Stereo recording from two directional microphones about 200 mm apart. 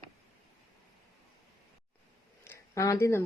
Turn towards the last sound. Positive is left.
turn(degrees=15)  # may be behind; listen again after turning